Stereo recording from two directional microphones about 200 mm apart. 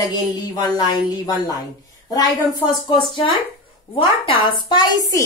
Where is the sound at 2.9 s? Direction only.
25° left (ahead or behind).